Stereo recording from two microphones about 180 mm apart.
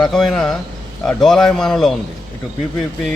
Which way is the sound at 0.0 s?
5° left (ahead or behind).